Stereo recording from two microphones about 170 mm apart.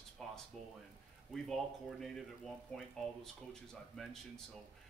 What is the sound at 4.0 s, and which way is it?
Speech, centre (ahead or behind).